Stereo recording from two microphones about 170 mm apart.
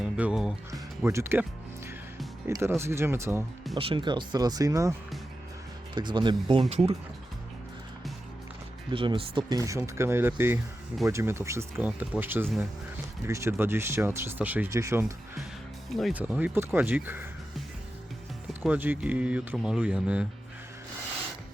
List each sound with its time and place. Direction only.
0.0 s music: 5° right (ahead or behind)
0.7 s music: 15° right (ahead or behind)
2.5 s speech: 15° right (ahead or behind)
3.8 s speech: 30° right (ahead or behind)
8.9 s speech: 30° right (ahead or behind)
15.9 s speech: centre (ahead or behind)
16.1 s speech: 10° right (ahead or behind)
18.6 s speech: 10° right (ahead or behind)